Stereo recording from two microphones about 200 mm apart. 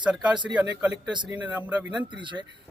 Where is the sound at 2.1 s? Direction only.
25° right (ahead or behind).